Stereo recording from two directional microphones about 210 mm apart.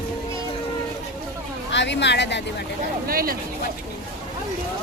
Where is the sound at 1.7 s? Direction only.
55° left (ahead or behind).